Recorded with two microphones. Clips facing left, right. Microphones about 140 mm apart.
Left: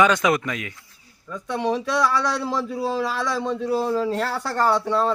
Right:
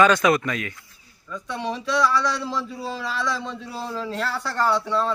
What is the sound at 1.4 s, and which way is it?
Speech, 50° left (ahead or behind).